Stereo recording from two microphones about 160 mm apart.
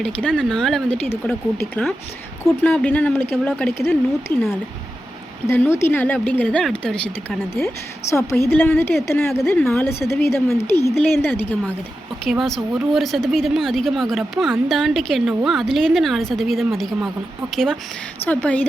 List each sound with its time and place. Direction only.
0.0 s speech: 5° left (ahead or behind)
5.5 s speech: 15° left (ahead or behind)
12.2 s speech: centre (ahead or behind)